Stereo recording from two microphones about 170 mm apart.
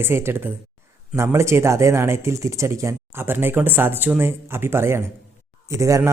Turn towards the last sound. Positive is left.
turn(degrees=-20)  # may be behind; listen again after turning